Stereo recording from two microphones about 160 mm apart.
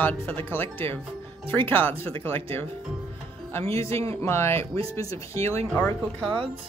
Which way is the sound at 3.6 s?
40° right (ahead or behind).